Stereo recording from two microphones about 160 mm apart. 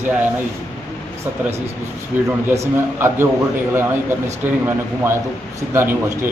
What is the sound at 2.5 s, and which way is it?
Speech, 15° right (ahead or behind).